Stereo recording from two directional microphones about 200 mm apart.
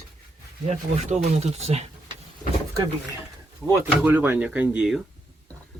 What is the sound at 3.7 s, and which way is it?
Speech, 10° right (ahead or behind).